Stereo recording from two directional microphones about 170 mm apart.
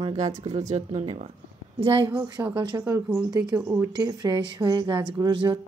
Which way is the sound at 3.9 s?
25° right (ahead or behind).